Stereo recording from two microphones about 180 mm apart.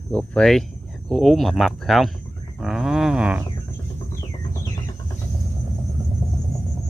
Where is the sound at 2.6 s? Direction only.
5° right (ahead or behind).